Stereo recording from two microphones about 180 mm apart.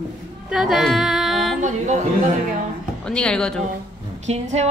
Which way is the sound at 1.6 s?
40° right (ahead or behind).